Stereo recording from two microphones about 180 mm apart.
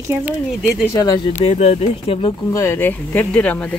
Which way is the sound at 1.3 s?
40° left (ahead or behind).